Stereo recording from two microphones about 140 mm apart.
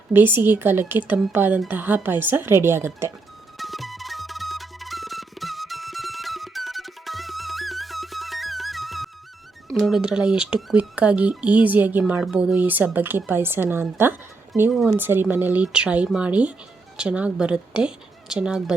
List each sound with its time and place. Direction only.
0.1 s speech: 15° right (ahead or behind)
3.6 s music: centre (ahead or behind)
9.6 s speech: centre (ahead or behind)
14.0 s a sound: 15° right (ahead or behind)
14.8 s speech: 15° right (ahead or behind)